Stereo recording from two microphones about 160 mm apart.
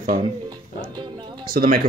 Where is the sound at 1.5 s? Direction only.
65° right (ahead or behind).